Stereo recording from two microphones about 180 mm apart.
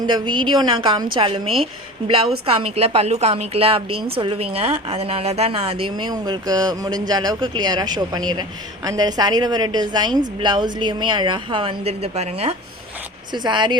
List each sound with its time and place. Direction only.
0.0 s a woman's voice: 25° right (ahead or behind)
13.3 s a woman's voice: 25° right (ahead or behind)